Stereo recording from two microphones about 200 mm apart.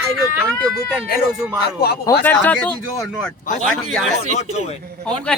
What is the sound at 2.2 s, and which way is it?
Speech, 10° left (ahead or behind).